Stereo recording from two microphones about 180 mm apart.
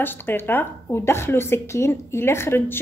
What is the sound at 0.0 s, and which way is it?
A woman's voice, 10° left (ahead or behind).